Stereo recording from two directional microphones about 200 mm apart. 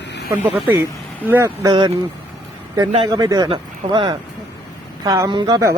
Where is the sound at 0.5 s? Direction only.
10° right (ahead or behind).